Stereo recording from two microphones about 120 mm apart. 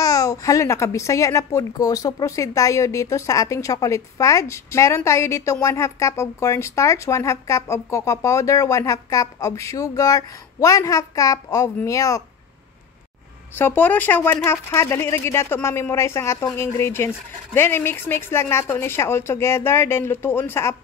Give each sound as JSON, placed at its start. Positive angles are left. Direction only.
{"t": 0.0, "sound": "a woman's voice", "side_deg": 25}
{"t": 13.6, "sound": "a woman's voice", "side_deg": 15}